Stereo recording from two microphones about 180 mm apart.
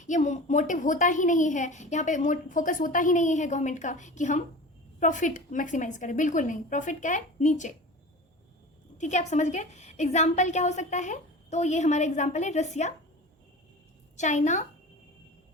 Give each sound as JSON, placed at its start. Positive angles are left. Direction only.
{"t": 0.0, "sound": "a woman's voice", "side_deg": 45}
{"t": 9.0, "sound": "a woman's voice", "side_deg": 40}
{"t": 14.2, "sound": "a woman's voice", "side_deg": 40}